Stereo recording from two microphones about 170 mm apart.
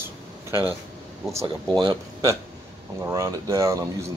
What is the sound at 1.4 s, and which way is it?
Speech, 25° right (ahead or behind).